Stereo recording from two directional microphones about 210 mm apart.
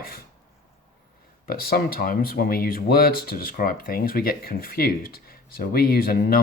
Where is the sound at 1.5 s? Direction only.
45° left (ahead or behind).